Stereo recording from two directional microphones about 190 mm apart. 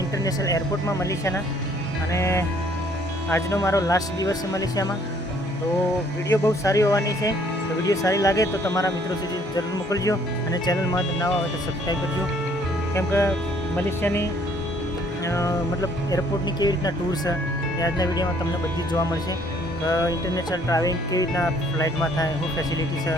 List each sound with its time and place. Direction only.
0.3 s speech: 15° left (ahead or behind)
2.1 s speech: 15° left (ahead or behind)
6.2 s speech: 15° left (ahead or behind)
12.9 s speech: 15° left (ahead or behind)
15.3 s speech: 15° left (ahead or behind)
19.9 s speech: 20° left (ahead or behind)